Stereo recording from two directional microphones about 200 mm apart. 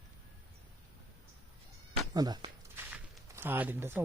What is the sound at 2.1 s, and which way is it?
Speech, 20° right (ahead or behind).